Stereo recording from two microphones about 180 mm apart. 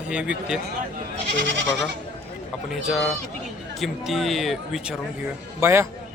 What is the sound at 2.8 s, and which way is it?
A man's voice, centre (ahead or behind).